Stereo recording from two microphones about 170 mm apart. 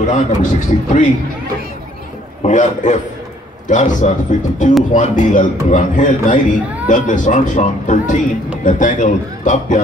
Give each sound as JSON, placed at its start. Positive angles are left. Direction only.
{"t": 0.0, "sound": "a man's voice", "side_deg": 45}
{"t": 2.4, "sound": "a man's voice", "side_deg": 45}